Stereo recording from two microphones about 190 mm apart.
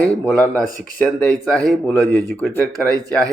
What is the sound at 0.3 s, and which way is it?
Speech, 5° left (ahead or behind).